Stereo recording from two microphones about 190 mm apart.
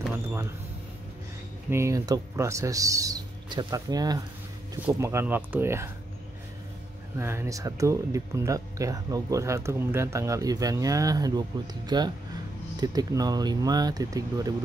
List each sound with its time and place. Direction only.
1.7 s speech: 15° right (ahead or behind)
7.2 s speech: 15° right (ahead or behind)